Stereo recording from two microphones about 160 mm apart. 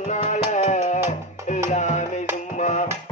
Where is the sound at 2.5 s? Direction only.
45° left (ahead or behind).